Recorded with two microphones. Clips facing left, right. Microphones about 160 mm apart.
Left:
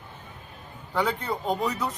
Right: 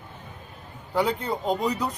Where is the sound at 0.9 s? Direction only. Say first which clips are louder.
Right 2 dB; 10° right (ahead or behind).